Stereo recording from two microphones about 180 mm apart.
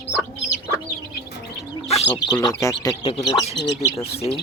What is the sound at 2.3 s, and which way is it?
Speech, 20° left (ahead or behind).